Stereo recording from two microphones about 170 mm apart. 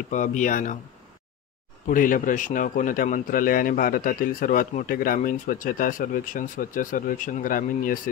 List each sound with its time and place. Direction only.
0.1 s a man's voice: 45° left (ahead or behind)
1.9 s a man's voice: 50° left (ahead or behind)